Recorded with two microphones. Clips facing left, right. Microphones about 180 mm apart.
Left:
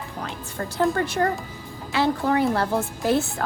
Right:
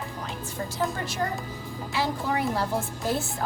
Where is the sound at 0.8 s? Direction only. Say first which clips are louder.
Left 8 dB; 60° left (ahead or behind).